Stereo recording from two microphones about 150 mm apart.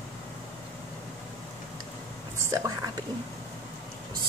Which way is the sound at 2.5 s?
25° right (ahead or behind).